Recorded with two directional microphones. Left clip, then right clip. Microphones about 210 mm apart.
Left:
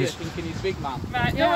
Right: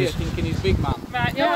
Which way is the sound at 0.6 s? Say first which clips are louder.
Right 4 dB; 50° right (ahead or behind).